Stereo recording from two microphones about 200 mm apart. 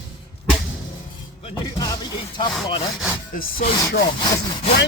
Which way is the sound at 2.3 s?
20° left (ahead or behind).